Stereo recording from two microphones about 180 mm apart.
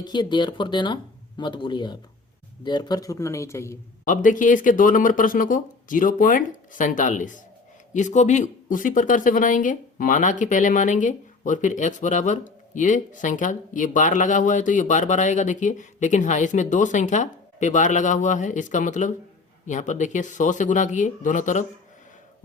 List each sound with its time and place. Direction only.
0.0 s speech: 25° left (ahead or behind)
4.0 s speech: 45° left (ahead or behind)